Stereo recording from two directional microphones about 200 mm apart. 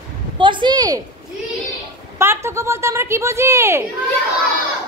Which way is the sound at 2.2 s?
10° right (ahead or behind).